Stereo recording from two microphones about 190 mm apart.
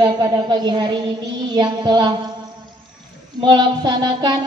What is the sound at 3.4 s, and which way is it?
A woman's voice, 25° right (ahead or behind).